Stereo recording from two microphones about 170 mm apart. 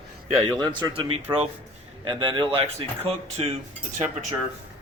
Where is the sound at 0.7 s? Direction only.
25° right (ahead or behind).